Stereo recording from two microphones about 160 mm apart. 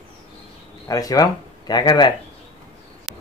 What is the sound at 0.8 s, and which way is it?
Speech, 20° left (ahead or behind).